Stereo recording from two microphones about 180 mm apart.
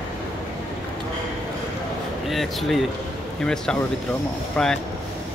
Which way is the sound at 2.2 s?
Centre (ahead or behind).